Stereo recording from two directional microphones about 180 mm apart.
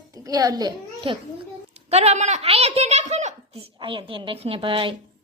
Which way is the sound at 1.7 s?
35° right (ahead or behind).